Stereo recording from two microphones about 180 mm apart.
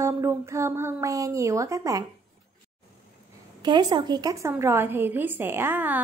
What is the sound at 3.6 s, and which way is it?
Speech, 25° right (ahead or behind).